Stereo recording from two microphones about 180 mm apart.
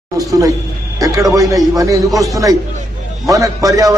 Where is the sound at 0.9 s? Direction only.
20° right (ahead or behind).